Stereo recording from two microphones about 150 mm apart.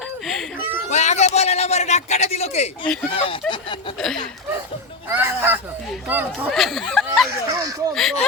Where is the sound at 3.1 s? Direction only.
40° left (ahead or behind).